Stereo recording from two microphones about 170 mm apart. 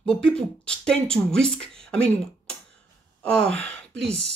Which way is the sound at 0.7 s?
5° left (ahead or behind).